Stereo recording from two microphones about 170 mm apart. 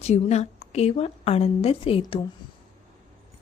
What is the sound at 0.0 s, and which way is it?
A woman's voice, 40° left (ahead or behind).